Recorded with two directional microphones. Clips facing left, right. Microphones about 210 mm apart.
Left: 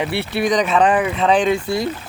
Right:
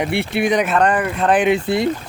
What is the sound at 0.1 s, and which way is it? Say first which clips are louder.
Speech: right 2 dB; 50° right (ahead or behind).